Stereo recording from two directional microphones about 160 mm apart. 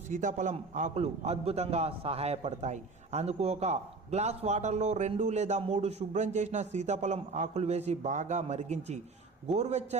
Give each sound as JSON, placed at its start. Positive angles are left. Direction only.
{"t": 0.1, "sound": "a man's voice", "side_deg": -55}